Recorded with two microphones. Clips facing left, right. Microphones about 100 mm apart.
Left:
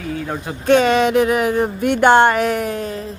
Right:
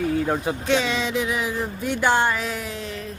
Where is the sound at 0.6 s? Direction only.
50° left (ahead or behind).